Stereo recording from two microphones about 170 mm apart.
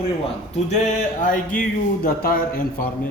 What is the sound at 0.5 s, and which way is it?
A man's voice, 45° left (ahead or behind).